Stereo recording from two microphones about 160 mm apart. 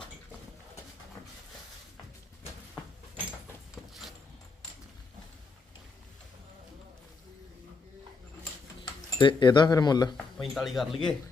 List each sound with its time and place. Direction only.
8.8 s speech: 25° left (ahead or behind)
10.2 s speech: 5° left (ahead or behind)